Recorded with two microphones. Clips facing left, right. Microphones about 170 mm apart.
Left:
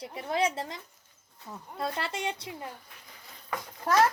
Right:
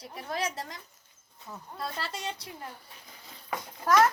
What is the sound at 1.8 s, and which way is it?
Speech, 25° left (ahead or behind).